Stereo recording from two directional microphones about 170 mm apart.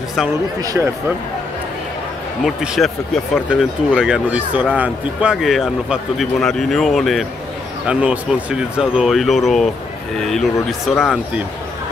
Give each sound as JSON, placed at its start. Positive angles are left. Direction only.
{"t": 0.6, "sound": "speech", "side_deg": -15}
{"t": 2.4, "sound": "speech", "side_deg": 0}